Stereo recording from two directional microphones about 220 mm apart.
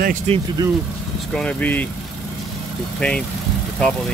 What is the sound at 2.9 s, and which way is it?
Speech, 5° left (ahead or behind).